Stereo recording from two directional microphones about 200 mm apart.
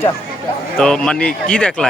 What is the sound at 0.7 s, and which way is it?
Speech, 5° left (ahead or behind).